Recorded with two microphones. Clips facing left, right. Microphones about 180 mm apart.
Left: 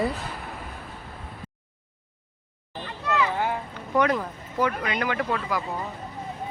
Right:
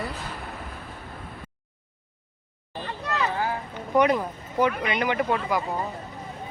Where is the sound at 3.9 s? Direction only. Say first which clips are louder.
Right 2 dB; 15° right (ahead or behind).